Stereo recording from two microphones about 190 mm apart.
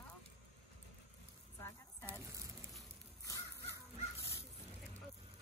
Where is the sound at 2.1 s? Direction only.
15° right (ahead or behind).